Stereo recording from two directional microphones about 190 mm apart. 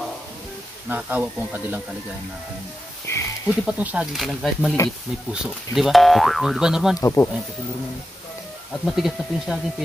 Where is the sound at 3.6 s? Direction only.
5° right (ahead or behind).